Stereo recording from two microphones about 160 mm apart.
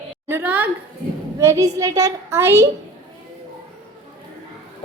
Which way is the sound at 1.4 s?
20° right (ahead or behind).